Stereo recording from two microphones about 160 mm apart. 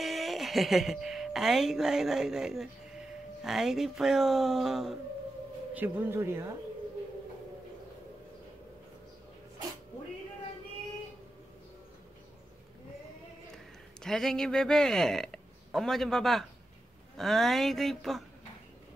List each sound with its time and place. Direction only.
0.0 s speech: centre (ahead or behind)
5.8 s speech: 15° right (ahead or behind)
14.0 s speech: 5° left (ahead or behind)